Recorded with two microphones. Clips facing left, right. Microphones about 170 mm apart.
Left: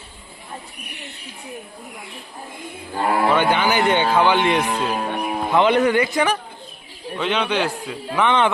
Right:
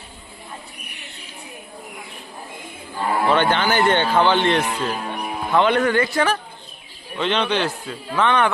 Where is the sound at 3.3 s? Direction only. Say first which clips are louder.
Even; 10° left (ahead or behind).